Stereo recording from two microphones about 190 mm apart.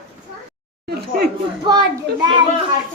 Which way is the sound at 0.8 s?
55° right (ahead or behind).